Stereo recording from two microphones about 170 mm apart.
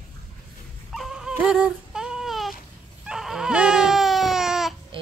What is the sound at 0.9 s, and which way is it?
Dog, centre (ahead or behind).